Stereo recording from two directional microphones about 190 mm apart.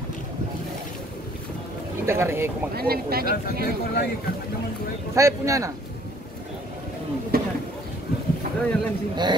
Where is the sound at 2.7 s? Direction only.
55° right (ahead or behind).